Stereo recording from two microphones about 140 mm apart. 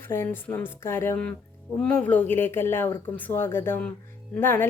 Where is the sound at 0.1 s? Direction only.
15° left (ahead or behind).